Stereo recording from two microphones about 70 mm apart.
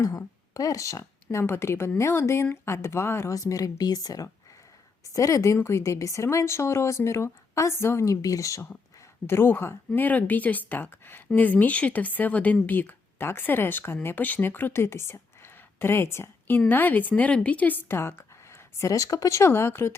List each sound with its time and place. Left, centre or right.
0.5 s speech: left
3.3 s a woman's voice: left
9.2 s speech: left
16.6 s speech: left
18.2 s speech: left